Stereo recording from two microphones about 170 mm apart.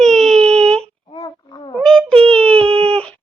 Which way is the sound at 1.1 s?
30° left (ahead or behind).